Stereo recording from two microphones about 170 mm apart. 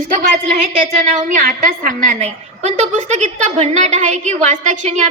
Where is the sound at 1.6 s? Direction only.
50° right (ahead or behind).